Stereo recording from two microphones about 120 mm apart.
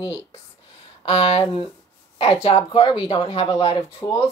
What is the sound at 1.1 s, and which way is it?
Speech, 60° left (ahead or behind).